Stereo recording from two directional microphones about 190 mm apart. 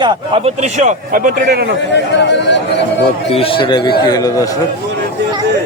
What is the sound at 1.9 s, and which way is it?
Speech, 65° left (ahead or behind).